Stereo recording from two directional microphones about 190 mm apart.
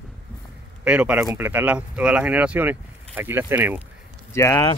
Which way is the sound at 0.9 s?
5° right (ahead or behind).